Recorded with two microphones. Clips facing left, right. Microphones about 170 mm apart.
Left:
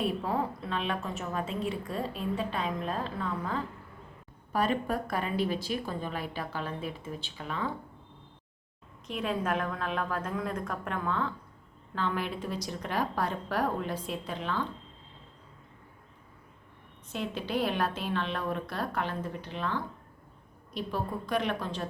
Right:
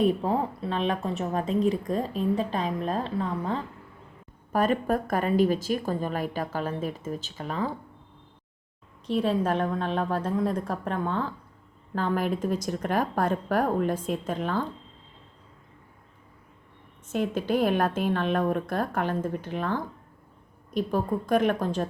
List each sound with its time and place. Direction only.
0.0 s a woman's voice: 30° right (ahead or behind)
4.5 s a woman's voice: 45° right (ahead or behind)
9.0 s a woman's voice: 30° right (ahead or behind)
11.9 s a woman's voice: 45° right (ahead or behind)
17.1 s a woman's voice: 50° right (ahead or behind)